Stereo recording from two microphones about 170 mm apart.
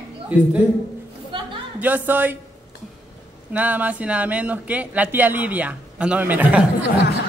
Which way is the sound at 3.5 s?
10° right (ahead or behind).